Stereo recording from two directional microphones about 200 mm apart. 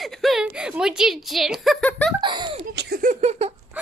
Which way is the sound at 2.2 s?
20° right (ahead or behind).